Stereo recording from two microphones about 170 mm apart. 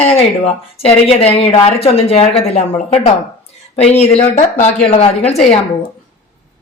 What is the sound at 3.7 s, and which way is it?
Speech, 40° left (ahead or behind).